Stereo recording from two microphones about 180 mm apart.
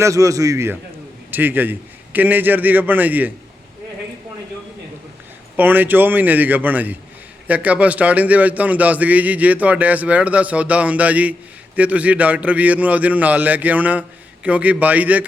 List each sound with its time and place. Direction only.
0.0 s a man's voice: 20° right (ahead or behind)
5.5 s a man's voice: 10° right (ahead or behind)